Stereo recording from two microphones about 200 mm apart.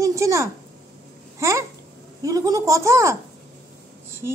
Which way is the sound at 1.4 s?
15° right (ahead or behind).